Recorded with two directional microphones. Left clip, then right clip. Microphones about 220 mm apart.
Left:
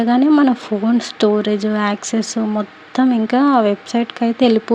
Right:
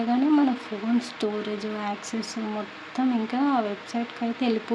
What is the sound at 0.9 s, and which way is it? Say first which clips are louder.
Speech: left 12 dB; 35° left (ahead or behind).